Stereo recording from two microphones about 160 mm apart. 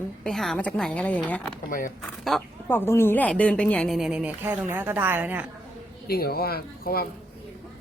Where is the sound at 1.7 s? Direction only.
60° left (ahead or behind).